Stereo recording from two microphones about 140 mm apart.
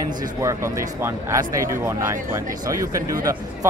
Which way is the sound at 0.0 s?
25° right (ahead or behind).